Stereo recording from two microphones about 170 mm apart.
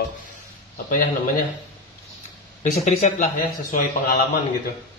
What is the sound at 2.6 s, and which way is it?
Speech, 40° left (ahead or behind).